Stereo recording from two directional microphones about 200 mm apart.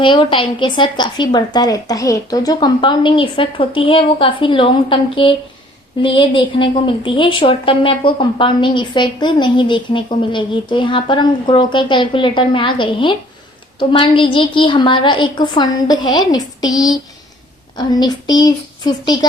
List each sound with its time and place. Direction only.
0.0 s a woman's voice: 25° left (ahead or behind)